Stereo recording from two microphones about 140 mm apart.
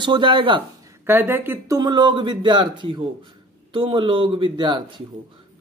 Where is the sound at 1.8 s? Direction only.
30° right (ahead or behind).